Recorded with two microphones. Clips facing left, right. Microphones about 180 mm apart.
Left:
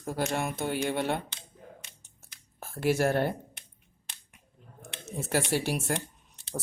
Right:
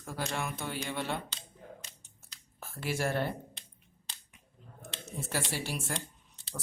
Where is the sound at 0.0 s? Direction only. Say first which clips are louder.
Left 6 dB; 45° left (ahead or behind).